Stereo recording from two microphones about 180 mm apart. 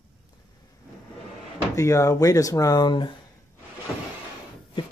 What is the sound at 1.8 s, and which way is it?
Speech, 15° left (ahead or behind).